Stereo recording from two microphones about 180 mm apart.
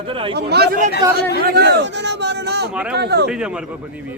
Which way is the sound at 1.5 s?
65° right (ahead or behind).